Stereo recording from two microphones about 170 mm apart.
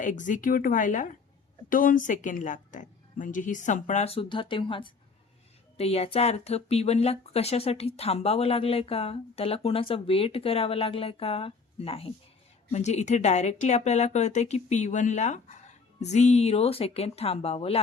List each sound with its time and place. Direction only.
0.0 s a woman's voice: 50° left (ahead or behind)